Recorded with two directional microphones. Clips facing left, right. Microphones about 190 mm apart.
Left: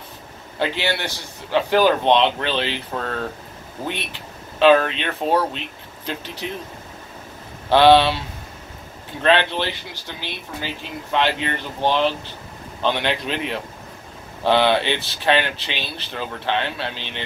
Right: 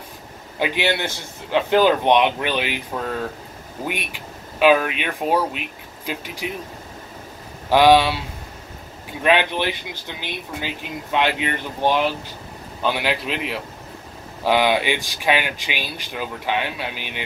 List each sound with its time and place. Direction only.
0.6 s speech: 15° right (ahead or behind)
7.7 s speech: 10° right (ahead or behind)
9.2 s a man's voice: 10° right (ahead or behind)